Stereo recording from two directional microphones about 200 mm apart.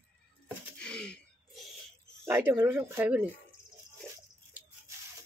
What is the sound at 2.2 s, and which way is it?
Speech, 10° right (ahead or behind).